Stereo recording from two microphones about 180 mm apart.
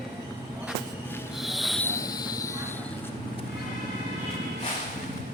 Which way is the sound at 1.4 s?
Centre (ahead or behind).